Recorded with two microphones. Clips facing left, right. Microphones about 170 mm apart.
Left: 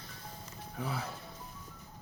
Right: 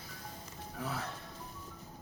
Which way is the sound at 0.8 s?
Centre (ahead or behind).